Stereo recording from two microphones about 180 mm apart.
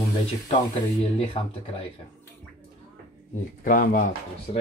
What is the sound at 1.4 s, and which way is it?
Speech, 40° left (ahead or behind).